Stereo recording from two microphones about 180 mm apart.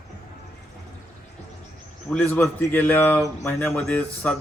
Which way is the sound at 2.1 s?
10° left (ahead or behind).